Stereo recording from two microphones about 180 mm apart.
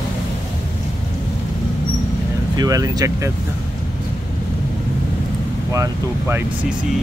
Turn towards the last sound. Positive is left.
turn(degrees=-15)  # may be behind; listen again after turning